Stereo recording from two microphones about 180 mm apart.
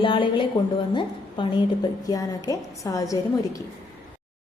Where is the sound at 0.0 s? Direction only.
30° left (ahead or behind).